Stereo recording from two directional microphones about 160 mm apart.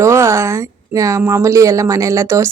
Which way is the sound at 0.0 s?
20° right (ahead or behind).